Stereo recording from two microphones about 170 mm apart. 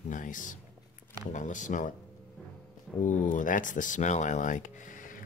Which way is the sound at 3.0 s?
50° left (ahead or behind).